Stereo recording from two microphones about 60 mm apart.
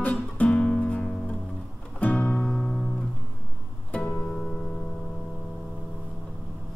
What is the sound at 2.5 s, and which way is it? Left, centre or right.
Music, centre.